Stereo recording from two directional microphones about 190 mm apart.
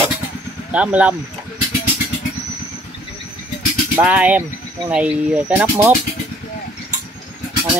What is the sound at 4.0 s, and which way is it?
Speech, 5° right (ahead or behind).